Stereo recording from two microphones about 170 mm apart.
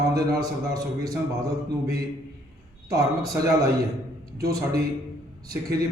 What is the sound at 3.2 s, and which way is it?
Speech, 20° right (ahead or behind).